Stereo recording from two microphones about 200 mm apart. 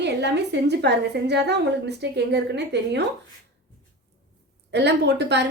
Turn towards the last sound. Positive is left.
turn(degrees=-60)  # may be behind; listen again after turning